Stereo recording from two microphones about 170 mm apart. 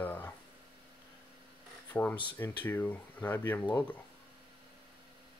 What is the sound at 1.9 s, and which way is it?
Speech, 10° left (ahead or behind).